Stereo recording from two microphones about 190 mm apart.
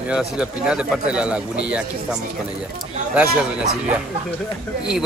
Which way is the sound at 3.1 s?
5° right (ahead or behind).